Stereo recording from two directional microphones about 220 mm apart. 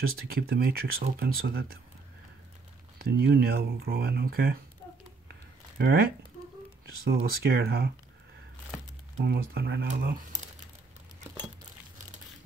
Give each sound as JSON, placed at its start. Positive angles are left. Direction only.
{"t": 0.1, "sound": "speech", "side_deg": -45}
{"t": 3.0, "sound": "speech", "side_deg": -45}
{"t": 5.3, "sound": "a sound", "side_deg": -45}
{"t": 7.1, "sound": "speech", "side_deg": -45}
{"t": 9.2, "sound": "speech", "side_deg": -45}